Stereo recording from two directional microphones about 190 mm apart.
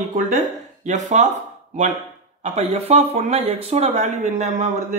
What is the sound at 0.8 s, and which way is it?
Speech, 40° right (ahead or behind).